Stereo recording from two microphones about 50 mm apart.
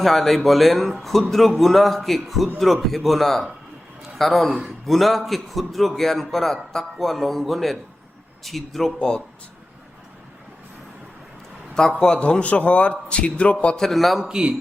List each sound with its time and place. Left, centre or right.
0.0 s a man's voice: centre
9.0 s a man's voice: centre
11.7 s a man's voice: centre
12.4 s a man's voice: left
13.7 s a man's voice: centre
14.3 s a man's voice: centre